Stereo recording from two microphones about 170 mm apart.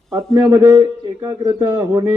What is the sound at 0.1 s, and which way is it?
A man's voice, 25° right (ahead or behind).